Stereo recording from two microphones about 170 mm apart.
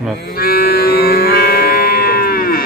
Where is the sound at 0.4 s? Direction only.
65° left (ahead or behind).